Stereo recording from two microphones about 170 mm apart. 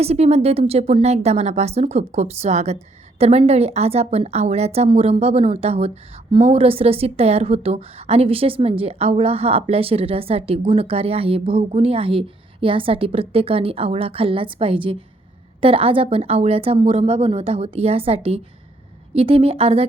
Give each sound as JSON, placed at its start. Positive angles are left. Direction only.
{"t": 0.0, "sound": "a woman's voice", "side_deg": -40}